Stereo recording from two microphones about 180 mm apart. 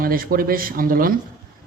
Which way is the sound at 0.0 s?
55° right (ahead or behind).